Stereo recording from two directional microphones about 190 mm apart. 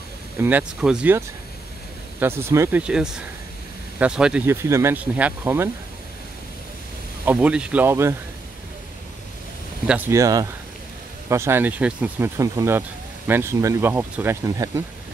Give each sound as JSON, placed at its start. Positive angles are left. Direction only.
{"t": 0.4, "sound": "speech", "side_deg": -10}
{"t": 7.2, "sound": "speech", "side_deg": -5}
{"t": 9.8, "sound": "speech", "side_deg": -10}